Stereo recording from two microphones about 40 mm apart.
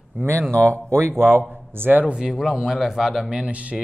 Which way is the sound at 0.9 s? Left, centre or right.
Right.